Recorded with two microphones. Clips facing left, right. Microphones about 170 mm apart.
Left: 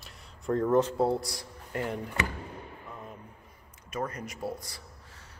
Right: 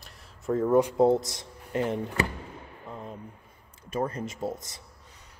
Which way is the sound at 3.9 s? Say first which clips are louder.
Right 5 dB; 30° right (ahead or behind).